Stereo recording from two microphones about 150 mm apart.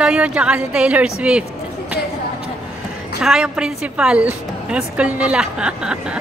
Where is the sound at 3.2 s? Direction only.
5° right (ahead or behind).